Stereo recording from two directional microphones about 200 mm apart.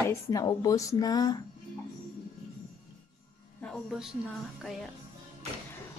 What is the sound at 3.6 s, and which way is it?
Speech, centre (ahead or behind).